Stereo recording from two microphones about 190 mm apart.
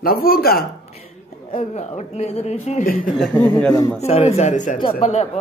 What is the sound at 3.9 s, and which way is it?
A man's voice, 35° left (ahead or behind).